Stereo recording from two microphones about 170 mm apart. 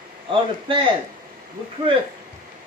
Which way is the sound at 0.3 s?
30° right (ahead or behind).